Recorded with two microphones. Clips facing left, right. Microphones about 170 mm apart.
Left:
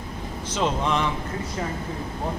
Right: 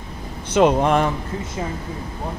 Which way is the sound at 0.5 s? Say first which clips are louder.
Right 9 dB; 60° right (ahead or behind).